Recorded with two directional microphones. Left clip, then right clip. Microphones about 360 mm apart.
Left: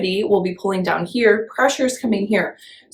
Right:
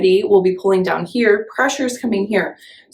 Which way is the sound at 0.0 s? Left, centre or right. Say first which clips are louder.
Right 6 dB; centre.